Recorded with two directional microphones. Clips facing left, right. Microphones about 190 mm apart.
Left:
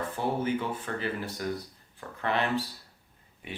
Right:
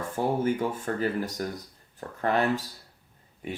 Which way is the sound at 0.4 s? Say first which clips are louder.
Right 3 dB; 45° right (ahead or behind).